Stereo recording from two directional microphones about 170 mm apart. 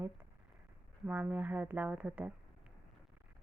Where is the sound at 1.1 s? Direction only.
10° right (ahead or behind).